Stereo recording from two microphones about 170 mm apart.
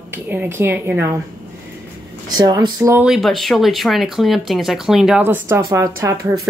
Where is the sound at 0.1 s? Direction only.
10° right (ahead or behind).